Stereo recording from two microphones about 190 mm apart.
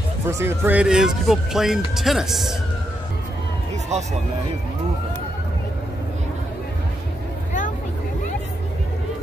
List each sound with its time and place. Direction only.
0.3 s speech: 15° right (ahead or behind)
3.9 s speech: 35° right (ahead or behind)